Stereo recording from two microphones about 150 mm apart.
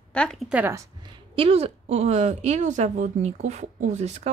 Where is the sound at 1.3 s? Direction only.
40° right (ahead or behind).